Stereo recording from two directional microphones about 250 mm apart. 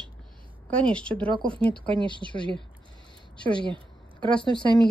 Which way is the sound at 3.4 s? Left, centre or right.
Centre.